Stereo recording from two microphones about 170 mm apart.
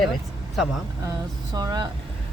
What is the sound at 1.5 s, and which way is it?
Speech, 25° right (ahead or behind).